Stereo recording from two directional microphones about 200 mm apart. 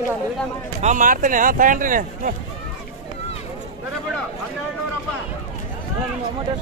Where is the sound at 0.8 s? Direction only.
40° right (ahead or behind).